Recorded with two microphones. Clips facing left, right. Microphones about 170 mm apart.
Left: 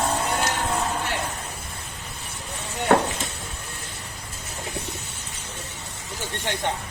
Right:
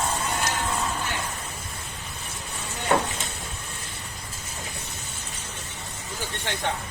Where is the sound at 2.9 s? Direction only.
65° left (ahead or behind).